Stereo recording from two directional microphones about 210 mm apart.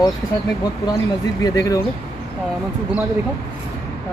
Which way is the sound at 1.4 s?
15° left (ahead or behind).